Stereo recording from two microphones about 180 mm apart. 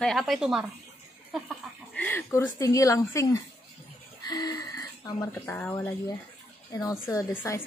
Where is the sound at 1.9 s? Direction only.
10° left (ahead or behind).